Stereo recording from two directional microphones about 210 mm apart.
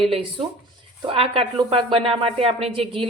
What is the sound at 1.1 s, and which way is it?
Speech, 25° right (ahead or behind).